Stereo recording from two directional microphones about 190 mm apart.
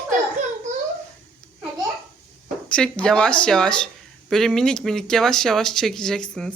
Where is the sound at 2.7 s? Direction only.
5° left (ahead or behind).